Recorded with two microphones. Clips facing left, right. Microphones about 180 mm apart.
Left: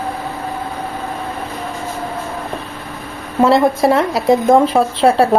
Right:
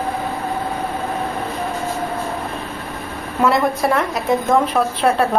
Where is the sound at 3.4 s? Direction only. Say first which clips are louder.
Left 5 dB; 25° left (ahead or behind).